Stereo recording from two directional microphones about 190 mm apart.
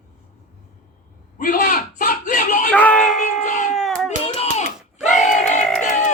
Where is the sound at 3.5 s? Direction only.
40° left (ahead or behind).